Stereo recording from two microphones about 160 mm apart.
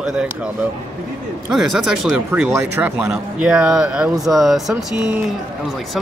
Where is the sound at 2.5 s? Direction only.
15° right (ahead or behind).